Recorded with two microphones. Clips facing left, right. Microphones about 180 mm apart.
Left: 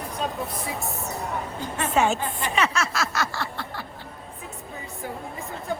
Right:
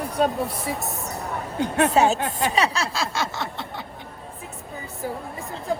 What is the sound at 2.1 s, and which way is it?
Speech, 75° right (ahead or behind).